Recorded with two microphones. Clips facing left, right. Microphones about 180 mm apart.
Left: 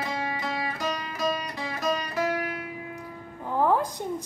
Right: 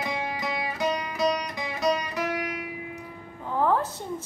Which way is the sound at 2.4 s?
10° right (ahead or behind).